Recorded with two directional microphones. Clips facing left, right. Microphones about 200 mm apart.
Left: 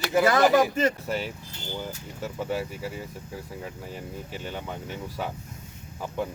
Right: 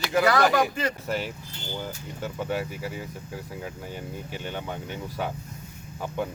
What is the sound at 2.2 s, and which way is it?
Speech, centre (ahead or behind).